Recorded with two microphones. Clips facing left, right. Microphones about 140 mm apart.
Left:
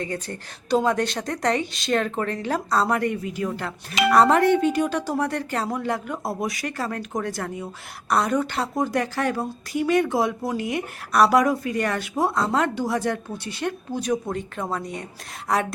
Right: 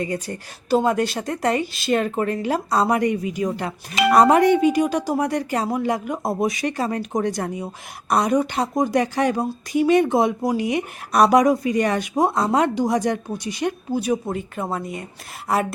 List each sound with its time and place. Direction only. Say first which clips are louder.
0.0 s speech: right 4 dB; 10° right (ahead or behind)